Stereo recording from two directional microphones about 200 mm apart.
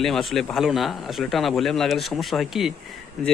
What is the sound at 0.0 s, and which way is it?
Speech, centre (ahead or behind).